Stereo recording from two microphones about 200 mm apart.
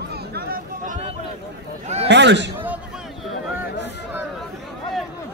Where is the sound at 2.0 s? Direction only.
60° right (ahead or behind).